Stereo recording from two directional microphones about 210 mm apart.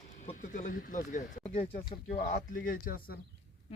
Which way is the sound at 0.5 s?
40° left (ahead or behind).